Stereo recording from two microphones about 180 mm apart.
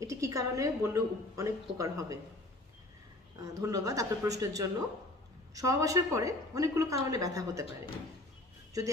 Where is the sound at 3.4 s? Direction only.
20° right (ahead or behind).